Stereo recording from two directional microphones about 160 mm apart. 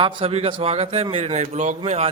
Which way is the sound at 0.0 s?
35° right (ahead or behind).